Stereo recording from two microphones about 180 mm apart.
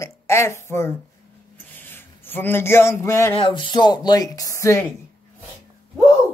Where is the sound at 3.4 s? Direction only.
25° left (ahead or behind).